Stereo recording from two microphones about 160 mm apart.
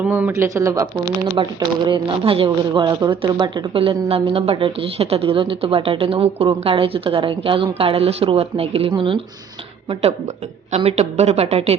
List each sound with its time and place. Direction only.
0.0 s a woman's voice: 10° right (ahead or behind); by 11.8 s 40° right (ahead or behind)